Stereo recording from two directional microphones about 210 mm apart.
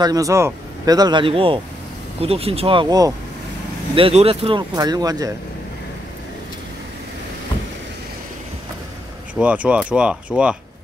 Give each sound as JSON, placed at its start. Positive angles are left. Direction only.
{"t": 0.0, "sound": "speech", "side_deg": -15}
{"t": 9.3, "sound": "speech", "side_deg": -5}